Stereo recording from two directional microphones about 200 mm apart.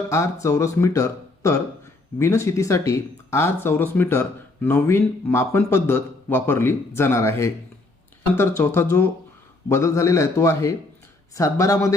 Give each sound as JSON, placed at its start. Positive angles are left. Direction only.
{"t": 0.1, "sound": "speech", "side_deg": 15}